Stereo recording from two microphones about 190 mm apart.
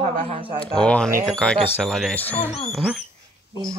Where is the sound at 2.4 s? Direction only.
35° left (ahead or behind).